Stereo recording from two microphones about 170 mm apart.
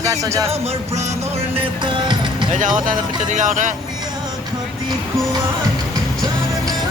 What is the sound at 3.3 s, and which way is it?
Speech, 45° right (ahead or behind).